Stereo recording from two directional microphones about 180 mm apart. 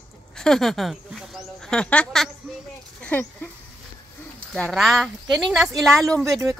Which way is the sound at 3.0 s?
10° left (ahead or behind).